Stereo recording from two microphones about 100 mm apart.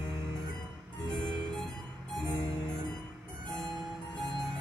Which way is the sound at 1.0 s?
50° left (ahead or behind).